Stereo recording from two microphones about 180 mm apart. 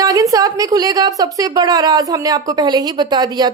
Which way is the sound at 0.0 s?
20° right (ahead or behind).